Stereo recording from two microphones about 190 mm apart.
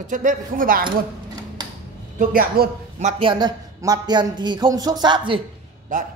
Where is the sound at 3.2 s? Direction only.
25° right (ahead or behind).